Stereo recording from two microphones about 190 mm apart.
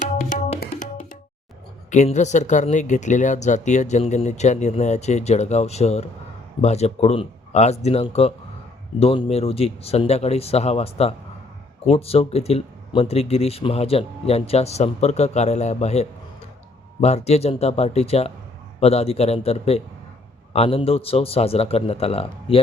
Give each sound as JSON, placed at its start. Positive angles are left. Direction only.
{"t": 0.0, "sound": "tabla", "side_deg": 40}
{"t": 1.9, "sound": "speech", "side_deg": 40}